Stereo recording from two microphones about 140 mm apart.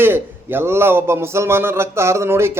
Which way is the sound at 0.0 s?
15° right (ahead or behind).